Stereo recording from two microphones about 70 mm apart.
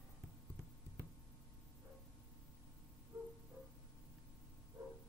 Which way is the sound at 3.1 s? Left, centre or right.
Right.